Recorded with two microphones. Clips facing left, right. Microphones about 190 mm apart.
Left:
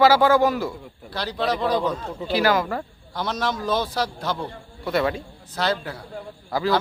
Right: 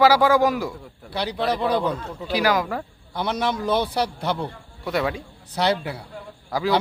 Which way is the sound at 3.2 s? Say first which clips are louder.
Right 2 dB; 15° right (ahead or behind).